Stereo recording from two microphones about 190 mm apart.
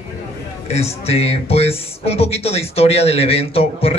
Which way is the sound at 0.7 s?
35° left (ahead or behind).